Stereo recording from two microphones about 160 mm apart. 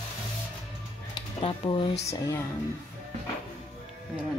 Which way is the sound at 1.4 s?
30° left (ahead or behind).